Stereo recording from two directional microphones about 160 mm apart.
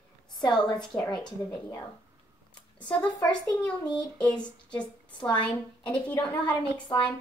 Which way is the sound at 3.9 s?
5° left (ahead or behind).